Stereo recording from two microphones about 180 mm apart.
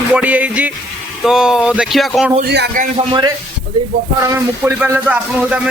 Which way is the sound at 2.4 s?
70° right (ahead or behind).